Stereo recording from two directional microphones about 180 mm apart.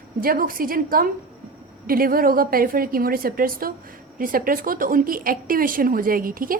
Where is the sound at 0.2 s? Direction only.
55° right (ahead or behind).